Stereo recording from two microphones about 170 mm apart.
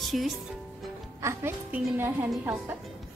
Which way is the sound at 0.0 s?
Centre (ahead or behind).